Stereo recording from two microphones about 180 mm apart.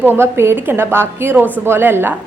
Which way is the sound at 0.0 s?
10° right (ahead or behind).